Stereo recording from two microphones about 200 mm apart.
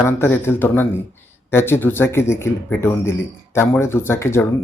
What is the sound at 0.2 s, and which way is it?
Speech, 10° left (ahead or behind).